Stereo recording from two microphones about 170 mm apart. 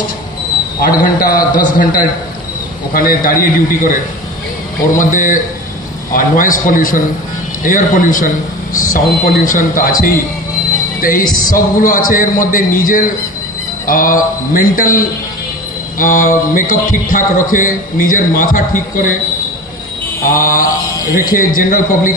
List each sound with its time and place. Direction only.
0.7 s a man's voice: 55° left (ahead or behind)
20.2 s a man's voice: 55° left (ahead or behind)